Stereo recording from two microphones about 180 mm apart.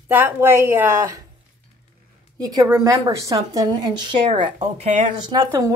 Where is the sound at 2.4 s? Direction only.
20° right (ahead or behind).